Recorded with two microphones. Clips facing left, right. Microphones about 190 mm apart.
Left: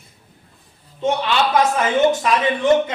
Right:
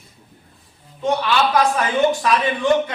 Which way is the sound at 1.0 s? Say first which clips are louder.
Even; 25° left (ahead or behind).